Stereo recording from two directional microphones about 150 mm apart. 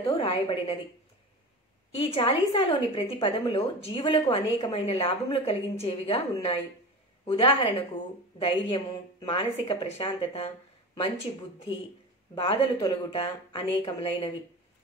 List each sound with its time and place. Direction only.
0.0 s a woman's voice: 40° left (ahead or behind)
2.0 s a woman's voice: 35° left (ahead or behind)
12.4 s a woman's voice: 35° left (ahead or behind)